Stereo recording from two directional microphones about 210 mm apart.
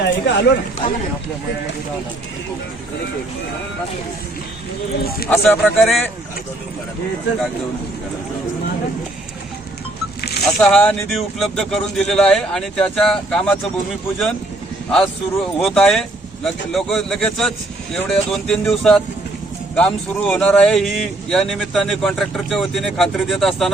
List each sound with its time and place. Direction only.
0.0 s speech: 55° left (ahead or behind)
5.3 s speech: 5° left (ahead or behind)
10.2 s a sound: 50° left (ahead or behind)
10.4 s speech: 5° left (ahead or behind)
14.8 s speech: 5° left (ahead or behind)